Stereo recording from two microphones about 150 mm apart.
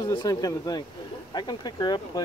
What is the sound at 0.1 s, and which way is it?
Speech, 25° left (ahead or behind).